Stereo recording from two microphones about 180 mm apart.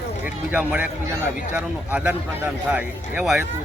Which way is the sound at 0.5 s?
5° right (ahead or behind).